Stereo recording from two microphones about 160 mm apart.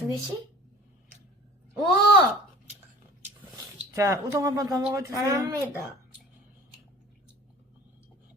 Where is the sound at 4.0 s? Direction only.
20° right (ahead or behind).